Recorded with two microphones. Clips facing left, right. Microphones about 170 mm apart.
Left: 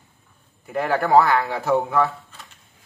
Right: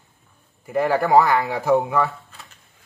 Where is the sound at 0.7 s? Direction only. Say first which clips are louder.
Right 1 dB; 10° right (ahead or behind).